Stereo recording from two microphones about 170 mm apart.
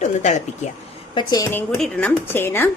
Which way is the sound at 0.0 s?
45° left (ahead or behind).